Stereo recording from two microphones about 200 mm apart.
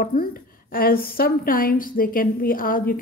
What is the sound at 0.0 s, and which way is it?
A woman's voice, 45° left (ahead or behind).